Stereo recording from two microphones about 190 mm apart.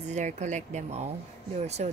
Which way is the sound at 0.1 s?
40° right (ahead or behind).